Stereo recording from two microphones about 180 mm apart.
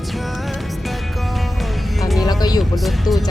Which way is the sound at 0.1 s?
Centre (ahead or behind).